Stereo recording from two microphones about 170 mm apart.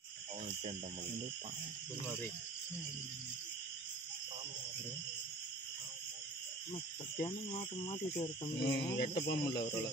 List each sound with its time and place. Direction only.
6.7 s speech: 30° left (ahead or behind)
8.6 s speech: 65° left (ahead or behind)